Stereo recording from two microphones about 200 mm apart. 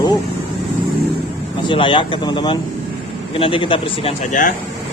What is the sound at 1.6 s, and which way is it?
Speech, 25° left (ahead or behind).